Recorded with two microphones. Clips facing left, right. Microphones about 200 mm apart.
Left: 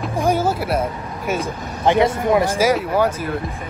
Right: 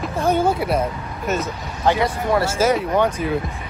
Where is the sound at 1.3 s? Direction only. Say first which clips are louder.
Even; 15° left (ahead or behind).